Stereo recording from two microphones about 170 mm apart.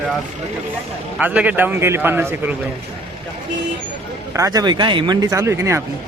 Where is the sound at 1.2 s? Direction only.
10° right (ahead or behind).